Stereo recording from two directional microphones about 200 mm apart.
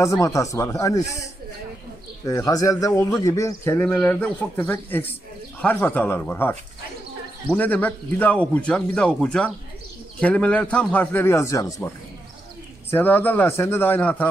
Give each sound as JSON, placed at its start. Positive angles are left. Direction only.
{"t": 0.0, "sound": "a man's voice", "side_deg": 15}
{"t": 2.2, "sound": "a man's voice", "side_deg": 15}
{"t": 7.5, "sound": "a man's voice", "side_deg": 10}
{"t": 12.9, "sound": "a man's voice", "side_deg": 10}